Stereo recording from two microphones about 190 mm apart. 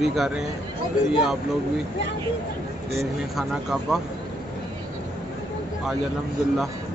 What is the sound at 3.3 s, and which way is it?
Speech, centre (ahead or behind).